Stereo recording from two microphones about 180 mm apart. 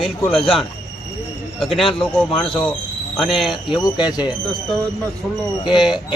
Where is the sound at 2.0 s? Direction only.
Centre (ahead or behind).